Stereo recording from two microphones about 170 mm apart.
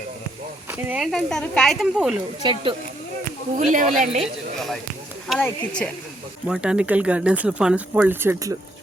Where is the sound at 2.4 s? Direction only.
30° right (ahead or behind).